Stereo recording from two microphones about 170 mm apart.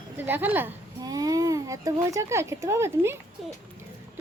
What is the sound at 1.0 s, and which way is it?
Speech, 20° right (ahead or behind).